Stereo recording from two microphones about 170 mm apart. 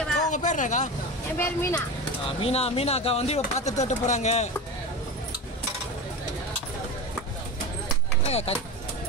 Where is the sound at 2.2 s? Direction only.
35° left (ahead or behind).